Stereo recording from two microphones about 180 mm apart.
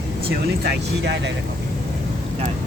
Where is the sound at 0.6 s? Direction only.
75° right (ahead or behind).